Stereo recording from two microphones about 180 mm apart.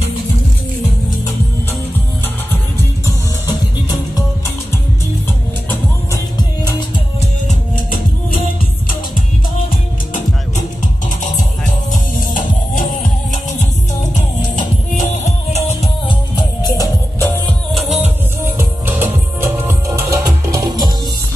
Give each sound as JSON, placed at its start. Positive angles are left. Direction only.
{"t": 5.7, "sound": "music", "side_deg": 15}
{"t": 7.4, "sound": "music", "side_deg": 50}
{"t": 12.4, "sound": "music", "side_deg": 50}
{"t": 15.0, "sound": "music", "side_deg": 45}
{"t": 16.6, "sound": "music", "side_deg": 20}
{"t": 17.7, "sound": "music", "side_deg": -10}